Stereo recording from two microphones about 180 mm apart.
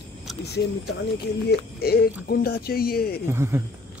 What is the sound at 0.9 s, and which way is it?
Speech, 85° left.